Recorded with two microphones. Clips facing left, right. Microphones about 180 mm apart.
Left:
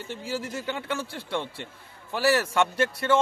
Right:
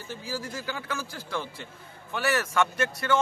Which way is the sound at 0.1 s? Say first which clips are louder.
Left 2 dB; 25° left (ahead or behind).